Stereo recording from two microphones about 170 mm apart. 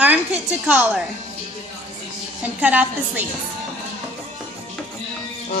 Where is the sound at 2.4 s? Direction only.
10° right (ahead or behind).